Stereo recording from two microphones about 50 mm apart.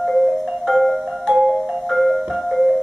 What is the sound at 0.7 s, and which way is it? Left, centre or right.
Marimba, centre.